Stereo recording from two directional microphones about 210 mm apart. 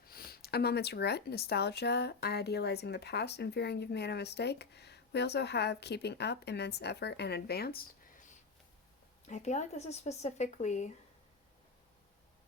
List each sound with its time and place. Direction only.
0.0 s speech: 45° left (ahead or behind)
9.2 s speech: 35° left (ahead or behind)